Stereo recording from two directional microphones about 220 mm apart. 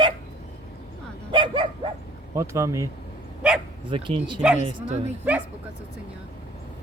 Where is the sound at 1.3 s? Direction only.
20° right (ahead or behind).